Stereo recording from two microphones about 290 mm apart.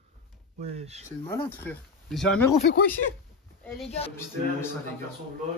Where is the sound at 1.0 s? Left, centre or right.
Centre.